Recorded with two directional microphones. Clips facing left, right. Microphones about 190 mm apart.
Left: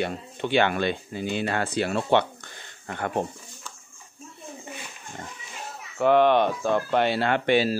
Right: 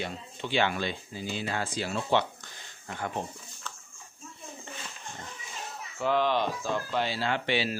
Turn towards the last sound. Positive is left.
turn(degrees=45)  # may be behind; listen again after turning